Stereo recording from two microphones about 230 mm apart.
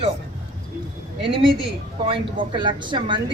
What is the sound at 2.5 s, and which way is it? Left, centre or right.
Speech, centre.